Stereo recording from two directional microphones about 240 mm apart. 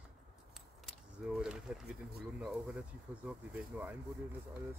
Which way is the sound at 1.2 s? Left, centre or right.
Centre.